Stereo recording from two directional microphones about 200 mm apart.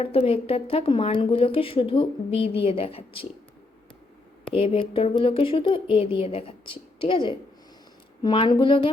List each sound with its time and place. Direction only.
0.0 s a woman's voice: 30° left (ahead or behind)
4.5 s a woman's voice: 30° left (ahead or behind)